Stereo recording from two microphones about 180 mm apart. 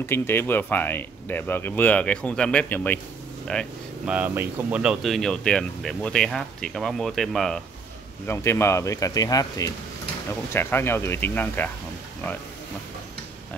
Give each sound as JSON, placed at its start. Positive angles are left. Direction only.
{"t": 0.0, "sound": "speech", "side_deg": 10}
{"t": 8.3, "sound": "speech", "side_deg": 15}